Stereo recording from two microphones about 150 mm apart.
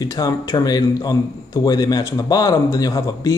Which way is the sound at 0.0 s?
25° left (ahead or behind).